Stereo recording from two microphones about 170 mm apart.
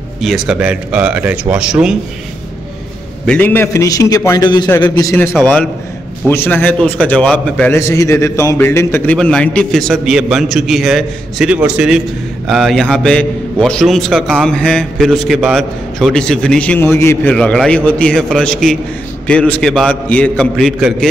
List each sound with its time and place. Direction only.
0.2 s a man's voice: centre (ahead or behind)
3.3 s a man's voice: 10° left (ahead or behind)
5.4 s a man's voice: 10° left (ahead or behind)